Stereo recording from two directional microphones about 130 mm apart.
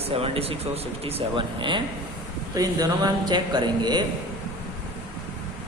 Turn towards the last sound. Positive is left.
turn(degrees=-35)  # may be behind; listen again after turning